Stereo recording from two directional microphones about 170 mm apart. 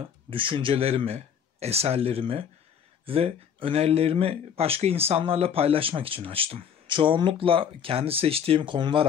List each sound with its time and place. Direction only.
0.0 s speech: 30° right (ahead or behind)